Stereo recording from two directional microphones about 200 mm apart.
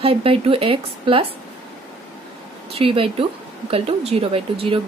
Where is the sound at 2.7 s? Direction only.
25° right (ahead or behind).